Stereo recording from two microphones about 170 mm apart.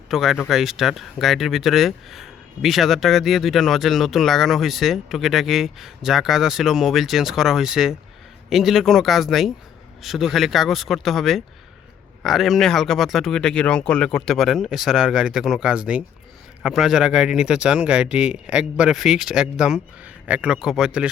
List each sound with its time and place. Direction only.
0.1 s speech: centre (ahead or behind)